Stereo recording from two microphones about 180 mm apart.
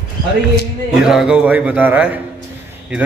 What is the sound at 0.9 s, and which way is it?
A man's voice, 5° right (ahead or behind).